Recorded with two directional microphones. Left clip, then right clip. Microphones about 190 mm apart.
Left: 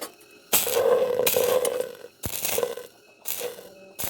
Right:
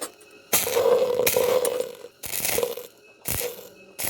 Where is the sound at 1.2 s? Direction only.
5° right (ahead or behind).